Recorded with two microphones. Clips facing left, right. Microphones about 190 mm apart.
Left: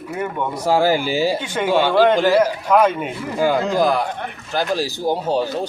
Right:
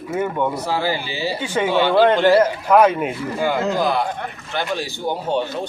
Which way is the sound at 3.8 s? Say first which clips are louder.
Left 2 dB; 45° left (ahead or behind).